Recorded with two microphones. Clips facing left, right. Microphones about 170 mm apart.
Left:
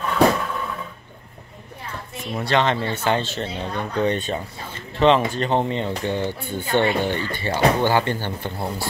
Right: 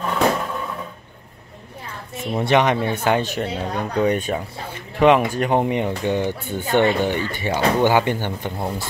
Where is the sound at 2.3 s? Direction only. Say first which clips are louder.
Right 3 dB; 20° right (ahead or behind).